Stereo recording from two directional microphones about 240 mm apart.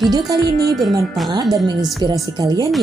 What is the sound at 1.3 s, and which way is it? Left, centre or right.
Speech, centre.